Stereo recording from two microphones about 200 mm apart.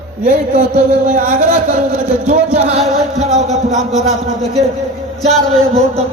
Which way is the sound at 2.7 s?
35° right (ahead or behind).